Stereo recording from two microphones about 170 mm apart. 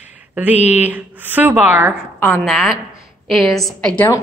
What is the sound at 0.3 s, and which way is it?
A woman's voice, 10° right (ahead or behind).